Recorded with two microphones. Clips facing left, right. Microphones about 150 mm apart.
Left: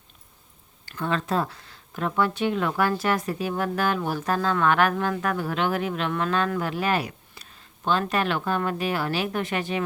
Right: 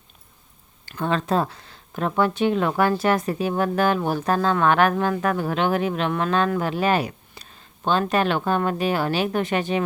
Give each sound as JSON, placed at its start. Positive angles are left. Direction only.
{"t": 0.9, "sound": "speech", "side_deg": -25}